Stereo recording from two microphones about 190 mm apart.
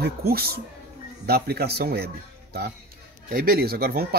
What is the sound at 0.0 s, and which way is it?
Speech, 55° right (ahead or behind).